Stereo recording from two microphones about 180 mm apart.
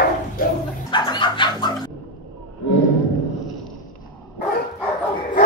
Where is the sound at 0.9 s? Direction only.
25° left (ahead or behind).